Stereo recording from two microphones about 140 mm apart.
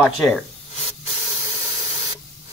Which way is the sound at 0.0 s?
5° left (ahead or behind).